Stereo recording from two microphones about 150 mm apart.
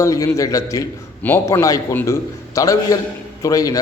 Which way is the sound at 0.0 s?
20° left (ahead or behind).